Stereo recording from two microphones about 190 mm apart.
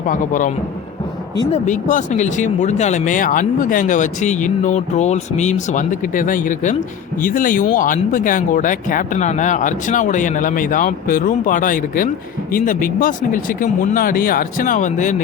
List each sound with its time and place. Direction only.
0.1 s speech: 45° left (ahead or behind)